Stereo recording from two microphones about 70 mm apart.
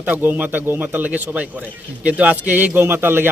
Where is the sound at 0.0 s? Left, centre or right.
Right.